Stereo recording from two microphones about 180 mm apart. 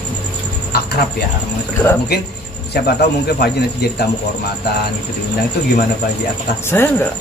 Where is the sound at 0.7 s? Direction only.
60° left (ahead or behind).